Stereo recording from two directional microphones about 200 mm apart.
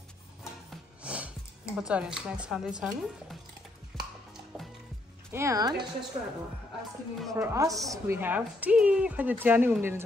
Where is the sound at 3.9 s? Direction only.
5° left (ahead or behind).